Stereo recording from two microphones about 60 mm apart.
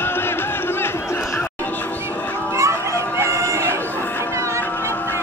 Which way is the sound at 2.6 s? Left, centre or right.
Right.